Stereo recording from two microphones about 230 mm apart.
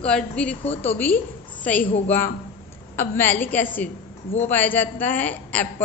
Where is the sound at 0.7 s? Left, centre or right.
Left.